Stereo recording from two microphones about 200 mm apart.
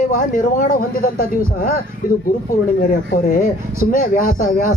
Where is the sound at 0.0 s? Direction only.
45° left (ahead or behind).